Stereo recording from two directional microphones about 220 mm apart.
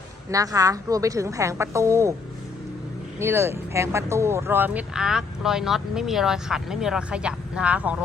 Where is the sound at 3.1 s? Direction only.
10° right (ahead or behind).